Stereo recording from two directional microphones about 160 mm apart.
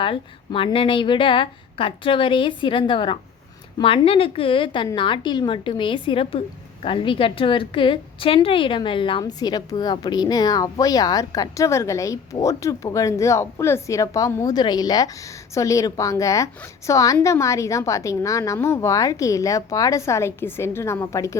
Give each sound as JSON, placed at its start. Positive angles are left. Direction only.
{"t": 0.0, "sound": "a woman's voice", "side_deg": 35}